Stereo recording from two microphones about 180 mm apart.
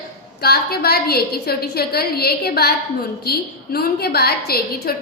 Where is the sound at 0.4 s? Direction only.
60° left (ahead or behind).